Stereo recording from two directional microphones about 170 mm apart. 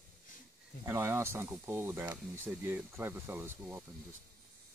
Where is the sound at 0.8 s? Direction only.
15° right (ahead or behind).